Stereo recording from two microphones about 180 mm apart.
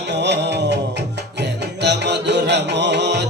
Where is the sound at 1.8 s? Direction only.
70° right (ahead or behind).